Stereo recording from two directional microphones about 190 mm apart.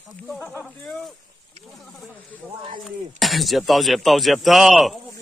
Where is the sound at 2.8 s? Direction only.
Centre (ahead or behind).